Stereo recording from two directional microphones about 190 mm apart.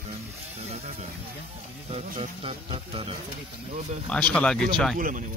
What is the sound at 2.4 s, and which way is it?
Music, 25° right (ahead or behind).